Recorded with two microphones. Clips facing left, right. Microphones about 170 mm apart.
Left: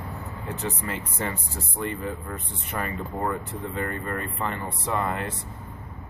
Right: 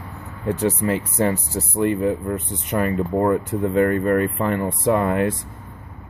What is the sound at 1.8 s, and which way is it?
Speech, 55° right (ahead or behind).